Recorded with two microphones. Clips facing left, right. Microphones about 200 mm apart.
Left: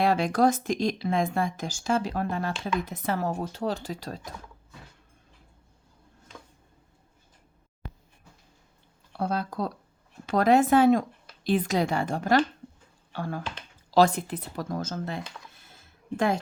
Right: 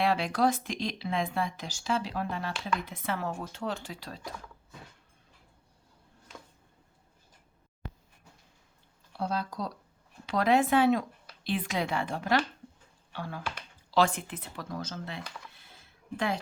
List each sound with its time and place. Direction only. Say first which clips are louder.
0.0 s speech: left 4 dB; 45° left (ahead or behind)
9.1 s speech: left 4 dB; 55° left (ahead or behind)
15.5 s a sound: left 2 dB; 45° left (ahead or behind)